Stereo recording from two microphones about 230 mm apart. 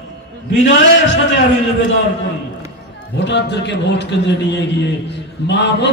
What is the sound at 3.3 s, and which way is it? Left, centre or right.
A man's voice, left.